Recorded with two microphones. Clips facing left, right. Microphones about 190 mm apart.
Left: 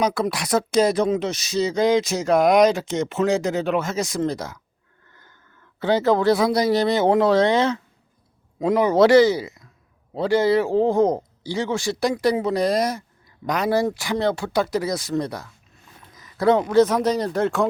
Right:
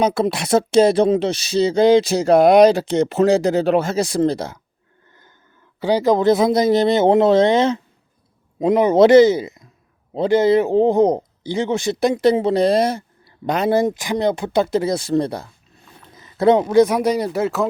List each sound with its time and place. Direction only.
0.0 s speech: 25° right (ahead or behind)
5.8 s a man's voice: 15° right (ahead or behind)